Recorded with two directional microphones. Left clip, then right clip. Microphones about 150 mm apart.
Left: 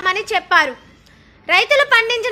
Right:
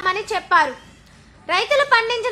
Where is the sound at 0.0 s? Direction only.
15° left (ahead or behind).